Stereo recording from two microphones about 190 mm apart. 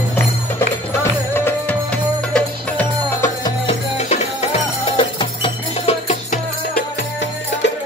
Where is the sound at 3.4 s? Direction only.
30° left (ahead or behind).